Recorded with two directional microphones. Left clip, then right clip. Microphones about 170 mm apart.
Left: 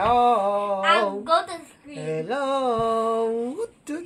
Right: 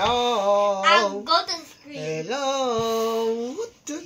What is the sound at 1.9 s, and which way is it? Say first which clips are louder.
Music: even; 30° left (ahead or behind).